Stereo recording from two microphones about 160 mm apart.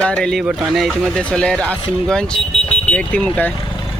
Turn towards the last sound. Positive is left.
turn(degrees=10)  # may be behind; listen again after turning